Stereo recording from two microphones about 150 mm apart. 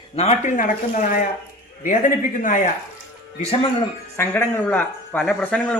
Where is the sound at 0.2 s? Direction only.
50° left (ahead or behind).